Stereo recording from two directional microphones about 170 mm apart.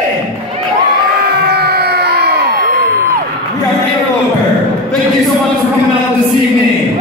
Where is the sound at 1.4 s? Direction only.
70° right (ahead or behind).